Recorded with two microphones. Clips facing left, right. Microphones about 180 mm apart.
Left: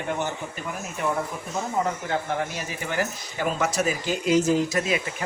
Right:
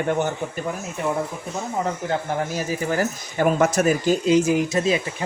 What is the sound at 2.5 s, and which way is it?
Speech, 40° right (ahead or behind).